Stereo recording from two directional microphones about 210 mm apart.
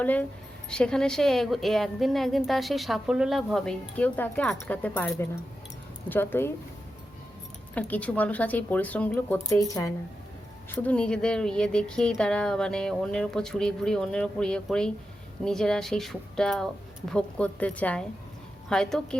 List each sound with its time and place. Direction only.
0.0 s a woman's voice: 10° left (ahead or behind)
7.8 s a woman's voice: 5° left (ahead or behind)